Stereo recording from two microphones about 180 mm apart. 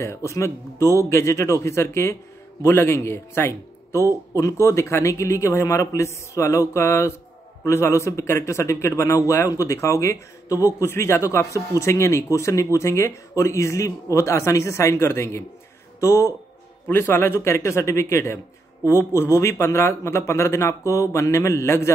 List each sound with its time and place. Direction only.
0.0 s speech: 15° left (ahead or behind)